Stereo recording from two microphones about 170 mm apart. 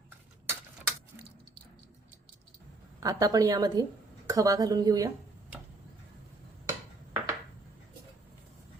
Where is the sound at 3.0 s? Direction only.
20° right (ahead or behind).